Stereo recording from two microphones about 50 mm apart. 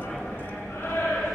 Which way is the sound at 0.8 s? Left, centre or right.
Left.